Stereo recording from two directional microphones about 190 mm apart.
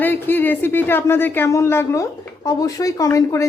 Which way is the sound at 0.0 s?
10° left (ahead or behind).